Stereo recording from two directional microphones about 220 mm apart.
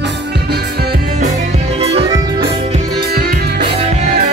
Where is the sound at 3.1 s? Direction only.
45° right (ahead or behind).